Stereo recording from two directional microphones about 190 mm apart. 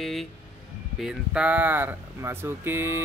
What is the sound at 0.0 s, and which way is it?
Speech, centre (ahead or behind).